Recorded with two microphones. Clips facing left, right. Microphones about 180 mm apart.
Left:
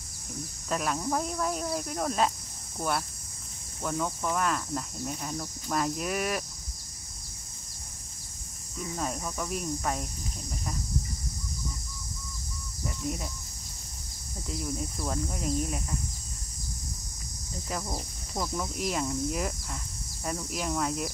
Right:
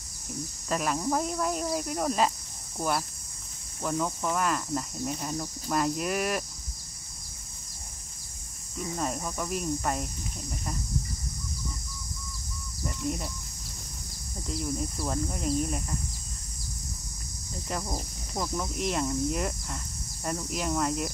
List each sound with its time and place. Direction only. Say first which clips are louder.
0.7 s speech: right 1 dB; centre (ahead or behind)
3.8 s speech: right 1 dB; 5° right (ahead or behind)
8.9 s speech: right 1 dB; centre (ahead or behind)
12.8 s bird: right 2 dB; centre (ahead or behind)
14.5 s speech: right 2 dB; centre (ahead or behind)
17.6 s speech: right 1 dB; centre (ahead or behind)